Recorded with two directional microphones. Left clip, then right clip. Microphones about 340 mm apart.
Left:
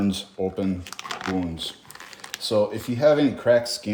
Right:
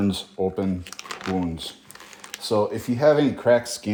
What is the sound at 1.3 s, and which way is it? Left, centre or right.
Speech, centre.